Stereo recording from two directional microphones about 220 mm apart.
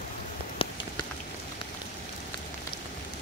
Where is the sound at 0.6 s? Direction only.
25° left (ahead or behind).